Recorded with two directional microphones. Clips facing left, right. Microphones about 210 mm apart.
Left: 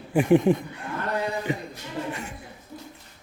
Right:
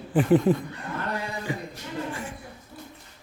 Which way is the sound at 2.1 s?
25° left (ahead or behind).